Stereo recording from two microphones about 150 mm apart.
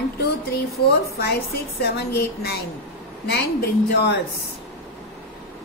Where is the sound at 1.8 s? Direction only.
90° left.